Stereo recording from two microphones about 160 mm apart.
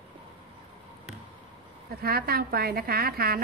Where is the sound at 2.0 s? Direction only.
70° right (ahead or behind).